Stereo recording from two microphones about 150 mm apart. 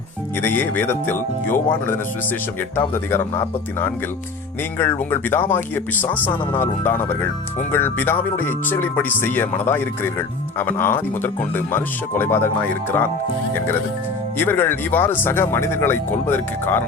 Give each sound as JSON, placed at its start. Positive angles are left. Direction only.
{"t": 0.4, "sound": "speech", "side_deg": 15}
{"t": 4.8, "sound": "speech", "side_deg": 15}